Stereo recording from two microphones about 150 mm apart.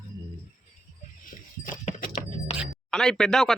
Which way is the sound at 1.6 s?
65° left (ahead or behind).